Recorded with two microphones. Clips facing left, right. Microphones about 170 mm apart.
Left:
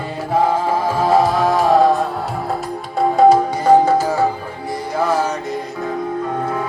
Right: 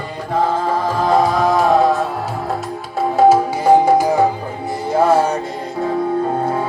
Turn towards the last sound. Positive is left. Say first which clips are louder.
# right 4 dB
turn(degrees=-30)  # may be behind; listen again after turning